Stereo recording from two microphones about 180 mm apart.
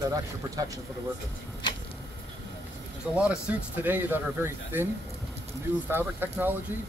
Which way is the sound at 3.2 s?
5° right (ahead or behind).